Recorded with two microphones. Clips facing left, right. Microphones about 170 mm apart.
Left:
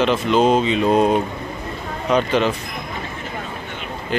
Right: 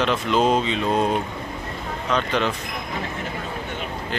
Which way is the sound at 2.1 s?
5° left (ahead or behind).